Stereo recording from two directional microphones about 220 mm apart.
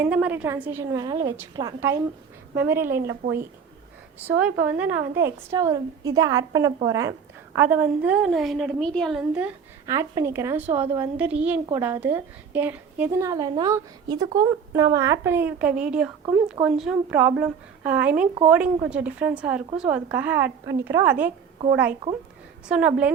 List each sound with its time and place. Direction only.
0.0 s a woman's voice: 5° right (ahead or behind)
3.0 s speech: 50° right (ahead or behind)
4.3 s a woman's voice: 5° right (ahead or behind)